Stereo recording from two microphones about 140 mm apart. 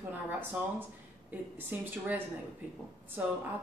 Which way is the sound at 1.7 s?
15° right (ahead or behind).